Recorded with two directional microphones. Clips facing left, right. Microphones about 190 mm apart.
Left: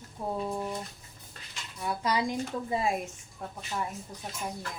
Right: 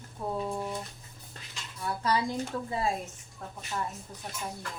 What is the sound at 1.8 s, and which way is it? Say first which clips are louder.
A woman's voice: even; 15° left (ahead or behind).